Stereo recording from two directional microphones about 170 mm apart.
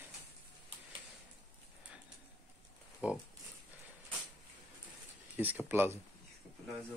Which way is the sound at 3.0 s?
10° right (ahead or behind).